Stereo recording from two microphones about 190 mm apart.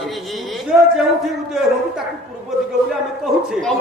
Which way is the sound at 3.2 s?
Centre (ahead or behind).